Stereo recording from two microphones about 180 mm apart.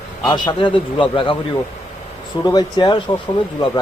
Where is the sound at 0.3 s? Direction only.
25° left (ahead or behind).